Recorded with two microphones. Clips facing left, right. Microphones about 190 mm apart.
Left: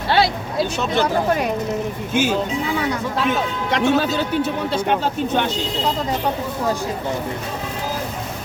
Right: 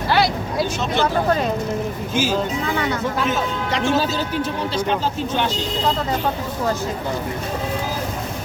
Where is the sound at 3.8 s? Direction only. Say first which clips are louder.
Left 2 dB; 60° left (ahead or behind).